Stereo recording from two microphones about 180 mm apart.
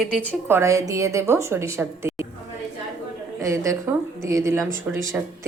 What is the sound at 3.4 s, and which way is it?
A woman's voice, 15° right (ahead or behind).